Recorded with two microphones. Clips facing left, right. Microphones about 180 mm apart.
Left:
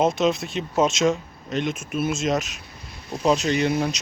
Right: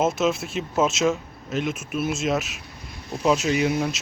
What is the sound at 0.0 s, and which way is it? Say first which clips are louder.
Speech: left 2 dB; centre (ahead or behind).